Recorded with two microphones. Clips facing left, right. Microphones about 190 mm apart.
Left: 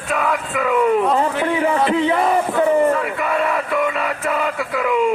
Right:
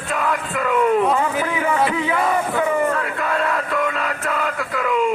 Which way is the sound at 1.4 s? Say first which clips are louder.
Left 3 dB; 35° left (ahead or behind).